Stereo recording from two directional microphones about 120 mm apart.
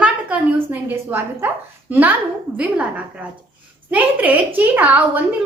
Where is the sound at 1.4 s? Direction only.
15° right (ahead or behind).